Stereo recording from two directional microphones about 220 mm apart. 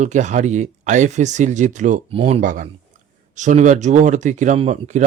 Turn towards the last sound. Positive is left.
turn(degrees=-35)  # may be behind; listen again after turning